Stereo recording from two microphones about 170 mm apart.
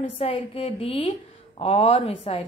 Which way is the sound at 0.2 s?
35° left (ahead or behind).